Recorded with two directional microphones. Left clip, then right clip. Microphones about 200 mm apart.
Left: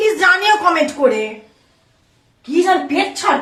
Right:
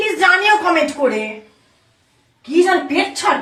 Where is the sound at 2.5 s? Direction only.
Centre (ahead or behind).